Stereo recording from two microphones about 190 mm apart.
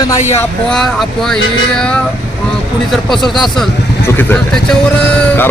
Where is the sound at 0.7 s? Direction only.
Centre (ahead or behind).